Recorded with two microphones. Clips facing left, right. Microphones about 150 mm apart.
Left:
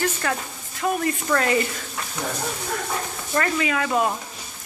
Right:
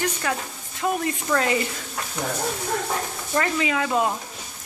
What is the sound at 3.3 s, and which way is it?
Speech, 15° right (ahead or behind).